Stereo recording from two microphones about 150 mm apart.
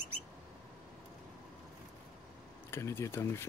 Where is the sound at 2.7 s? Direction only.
15° left (ahead or behind).